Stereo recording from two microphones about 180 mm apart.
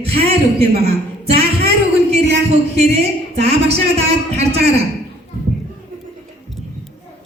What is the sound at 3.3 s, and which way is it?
A woman's voice, 35° right (ahead or behind).